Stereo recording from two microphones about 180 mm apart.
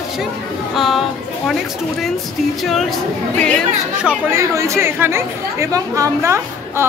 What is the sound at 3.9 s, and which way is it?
Speech, 5° right (ahead or behind).